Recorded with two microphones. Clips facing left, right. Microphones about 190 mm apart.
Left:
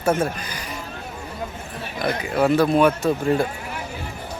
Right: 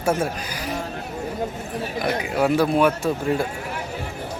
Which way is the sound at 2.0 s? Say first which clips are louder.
Left 2 dB; 10° right (ahead or behind).